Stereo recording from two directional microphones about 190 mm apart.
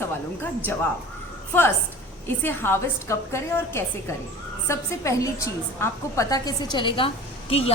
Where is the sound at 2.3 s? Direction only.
10° left (ahead or behind).